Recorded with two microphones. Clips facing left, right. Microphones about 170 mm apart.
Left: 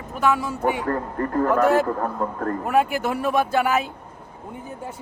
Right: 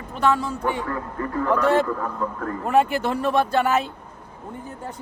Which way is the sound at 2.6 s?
5° left (ahead or behind).